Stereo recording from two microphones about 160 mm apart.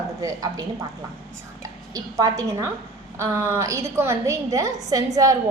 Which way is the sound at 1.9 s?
25° right (ahead or behind).